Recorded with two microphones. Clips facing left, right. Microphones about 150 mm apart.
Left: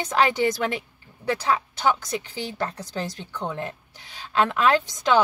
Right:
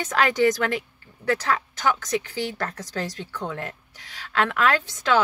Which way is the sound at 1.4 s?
15° left (ahead or behind).